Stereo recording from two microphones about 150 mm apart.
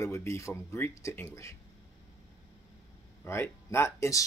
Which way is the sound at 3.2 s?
15° left (ahead or behind).